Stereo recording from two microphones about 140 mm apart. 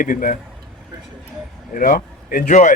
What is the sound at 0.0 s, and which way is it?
Speech, 75° left (ahead or behind).